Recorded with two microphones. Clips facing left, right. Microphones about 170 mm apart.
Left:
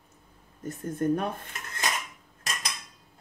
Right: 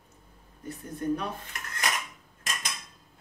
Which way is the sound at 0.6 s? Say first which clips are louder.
Left 3 dB; 50° left (ahead or behind).